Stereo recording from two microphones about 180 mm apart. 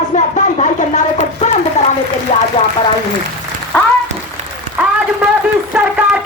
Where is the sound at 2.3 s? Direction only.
35° left (ahead or behind).